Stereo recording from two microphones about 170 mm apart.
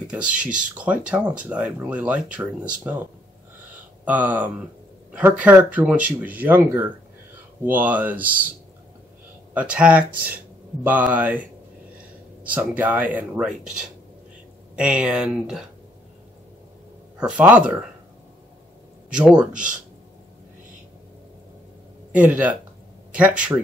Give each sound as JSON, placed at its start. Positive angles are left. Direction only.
{"t": 0.4, "sound": "speech", "side_deg": -5}
{"t": 4.0, "sound": "speech", "side_deg": -10}
{"t": 9.5, "sound": "speech", "side_deg": -10}
{"t": 12.4, "sound": "speech", "side_deg": -10}
{"t": 17.2, "sound": "speech", "side_deg": -10}
{"t": 19.5, "sound": "speech", "side_deg": -50}
{"t": 22.1, "sound": "speech", "side_deg": -10}